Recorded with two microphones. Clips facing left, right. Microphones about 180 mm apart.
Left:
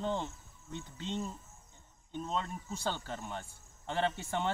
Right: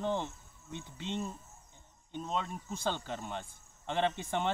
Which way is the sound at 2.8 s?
20° right (ahead or behind).